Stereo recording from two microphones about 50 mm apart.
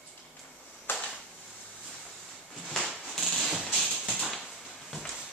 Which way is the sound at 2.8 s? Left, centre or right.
Centre.